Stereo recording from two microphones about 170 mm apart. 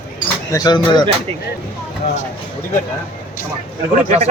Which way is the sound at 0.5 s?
25° left (ahead or behind).